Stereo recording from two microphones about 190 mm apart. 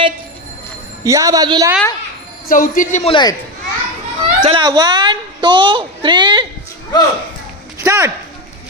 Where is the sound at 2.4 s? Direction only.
45° left (ahead or behind).